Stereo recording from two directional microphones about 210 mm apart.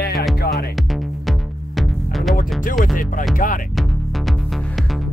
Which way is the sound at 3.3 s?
40° left (ahead or behind).